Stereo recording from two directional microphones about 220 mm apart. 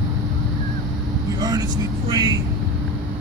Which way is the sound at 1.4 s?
20° right (ahead or behind).